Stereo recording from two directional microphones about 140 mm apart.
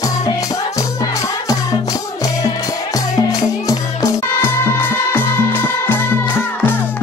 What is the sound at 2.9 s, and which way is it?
Music, 25° left (ahead or behind).